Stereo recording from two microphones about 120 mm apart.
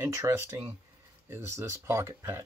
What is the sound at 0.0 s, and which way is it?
Speech, 25° right (ahead or behind).